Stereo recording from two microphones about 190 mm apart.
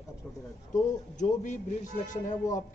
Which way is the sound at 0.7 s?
40° left (ahead or behind).